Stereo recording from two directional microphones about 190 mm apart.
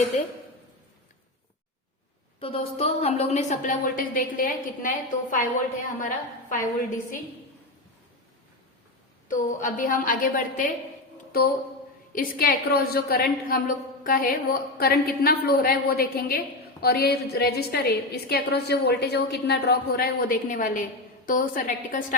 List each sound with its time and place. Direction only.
2.4 s a woman's voice: 30° left (ahead or behind); by 5.4 s 45° left (ahead or behind)
6.5 s a woman's voice: 45° left (ahead or behind)
9.3 s a woman's voice: 45° left (ahead or behind)